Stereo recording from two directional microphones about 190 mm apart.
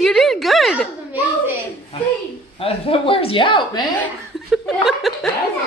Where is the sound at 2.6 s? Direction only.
30° left (ahead or behind).